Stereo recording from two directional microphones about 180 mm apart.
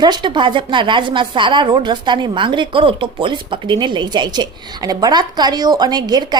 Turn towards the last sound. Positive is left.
turn(degrees=-25)  # may be behind; listen again after turning